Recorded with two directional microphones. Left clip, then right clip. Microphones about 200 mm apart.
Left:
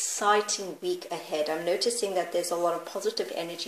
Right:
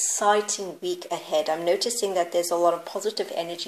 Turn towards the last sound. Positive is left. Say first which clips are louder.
# right 3 dB
turn(degrees=-30)  # may be behind; listen again after turning